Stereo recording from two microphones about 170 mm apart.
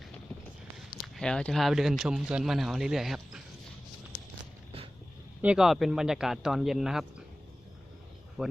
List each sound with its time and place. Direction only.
1.0 s speech: 5° left (ahead or behind)
5.4 s speech: 5° right (ahead or behind)
8.4 s speech: centre (ahead or behind)